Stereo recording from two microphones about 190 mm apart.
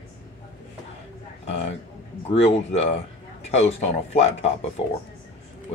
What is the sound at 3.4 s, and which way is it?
Speech, 35° left (ahead or behind).